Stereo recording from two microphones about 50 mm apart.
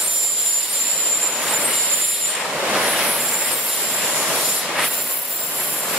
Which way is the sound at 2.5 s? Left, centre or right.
Centre.